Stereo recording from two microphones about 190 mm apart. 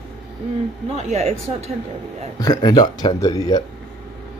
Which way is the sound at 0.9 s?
35° right (ahead or behind).